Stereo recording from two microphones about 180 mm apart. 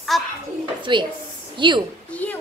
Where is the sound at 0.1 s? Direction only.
Centre (ahead or behind).